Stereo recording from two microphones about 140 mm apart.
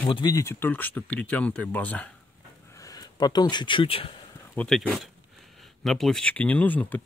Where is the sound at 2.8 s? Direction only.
25° left (ahead or behind).